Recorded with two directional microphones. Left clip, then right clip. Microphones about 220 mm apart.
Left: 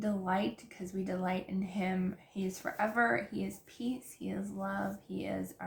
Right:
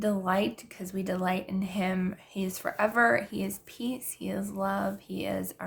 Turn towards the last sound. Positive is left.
turn(degrees=-45)  # may be behind; listen again after turning